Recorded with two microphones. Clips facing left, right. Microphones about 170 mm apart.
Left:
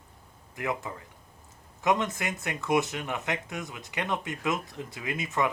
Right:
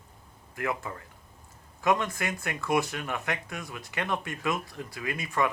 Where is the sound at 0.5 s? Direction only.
20° left (ahead or behind).